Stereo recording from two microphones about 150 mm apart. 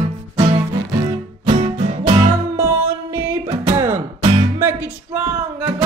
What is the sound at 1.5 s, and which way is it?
Music, 50° right (ahead or behind).